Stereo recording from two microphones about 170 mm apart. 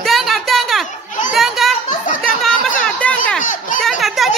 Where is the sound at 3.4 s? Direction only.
50° left (ahead or behind).